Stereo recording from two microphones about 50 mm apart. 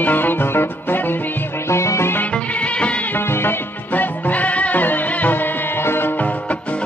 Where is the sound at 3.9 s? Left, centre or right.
Left.